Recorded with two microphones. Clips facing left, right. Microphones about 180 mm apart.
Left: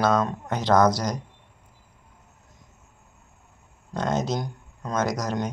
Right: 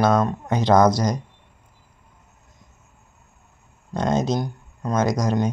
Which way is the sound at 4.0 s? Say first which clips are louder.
Right 4 dB; 15° right (ahead or behind).